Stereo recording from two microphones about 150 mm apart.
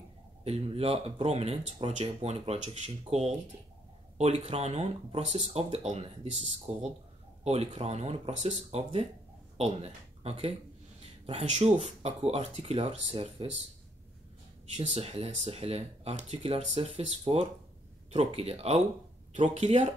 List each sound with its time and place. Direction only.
0.4 s speech: 40° right (ahead or behind)
14.7 s speech: 45° right (ahead or behind)